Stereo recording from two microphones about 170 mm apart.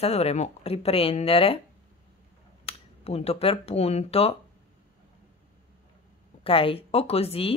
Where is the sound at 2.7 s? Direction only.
35° left (ahead or behind).